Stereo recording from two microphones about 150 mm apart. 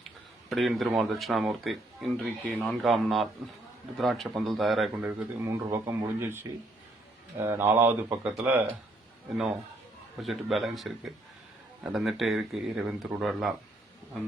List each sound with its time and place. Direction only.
0.5 s speech: centre (ahead or behind)
5.0 s speech: 20° right (ahead or behind)
10.2 s speech: centre (ahead or behind)